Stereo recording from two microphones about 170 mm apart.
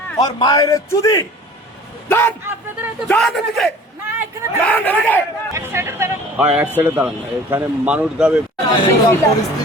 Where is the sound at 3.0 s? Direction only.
Centre (ahead or behind).